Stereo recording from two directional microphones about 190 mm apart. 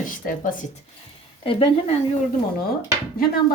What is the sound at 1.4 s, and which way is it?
Speech, 30° left (ahead or behind).